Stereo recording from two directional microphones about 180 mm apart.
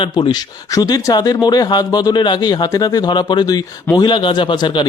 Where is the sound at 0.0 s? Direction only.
25° left (ahead or behind).